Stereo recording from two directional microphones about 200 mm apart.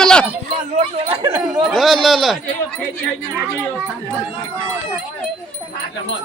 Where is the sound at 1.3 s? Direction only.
15° right (ahead or behind).